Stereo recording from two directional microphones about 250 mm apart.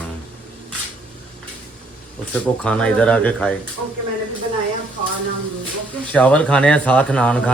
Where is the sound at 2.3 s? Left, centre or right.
Centre.